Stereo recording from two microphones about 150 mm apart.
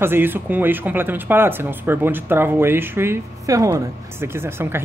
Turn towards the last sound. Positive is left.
turn(degrees=-15)  # may be behind; listen again after turning